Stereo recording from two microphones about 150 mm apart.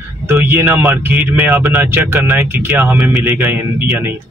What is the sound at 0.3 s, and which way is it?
Speech, 15° right (ahead or behind).